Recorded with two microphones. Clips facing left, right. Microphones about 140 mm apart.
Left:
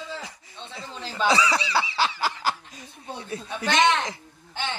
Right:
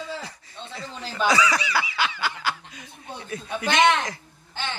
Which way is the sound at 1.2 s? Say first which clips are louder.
Even; 25° left (ahead or behind).